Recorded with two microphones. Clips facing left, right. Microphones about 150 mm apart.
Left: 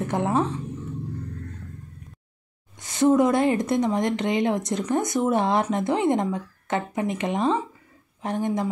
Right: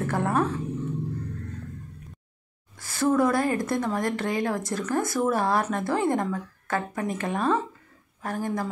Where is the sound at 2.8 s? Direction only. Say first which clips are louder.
Left 4 dB; 20° left (ahead or behind).